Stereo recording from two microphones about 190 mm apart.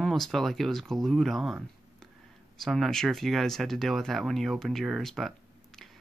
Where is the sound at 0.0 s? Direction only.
Centre (ahead or behind).